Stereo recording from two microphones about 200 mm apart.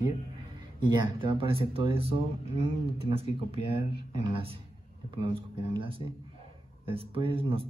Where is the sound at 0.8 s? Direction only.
25° right (ahead or behind).